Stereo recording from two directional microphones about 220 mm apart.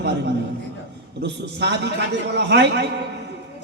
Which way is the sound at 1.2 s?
50° right (ahead or behind).